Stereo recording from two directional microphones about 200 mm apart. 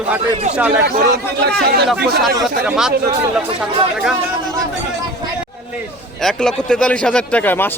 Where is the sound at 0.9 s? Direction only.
50° right (ahead or behind).